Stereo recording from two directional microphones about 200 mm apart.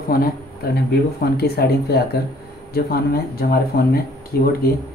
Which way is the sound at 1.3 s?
50° left (ahead or behind).